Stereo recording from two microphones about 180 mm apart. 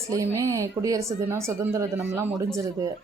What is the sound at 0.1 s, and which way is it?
Speech, 15° right (ahead or behind).